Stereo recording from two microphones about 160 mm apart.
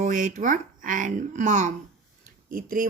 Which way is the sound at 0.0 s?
50° right (ahead or behind).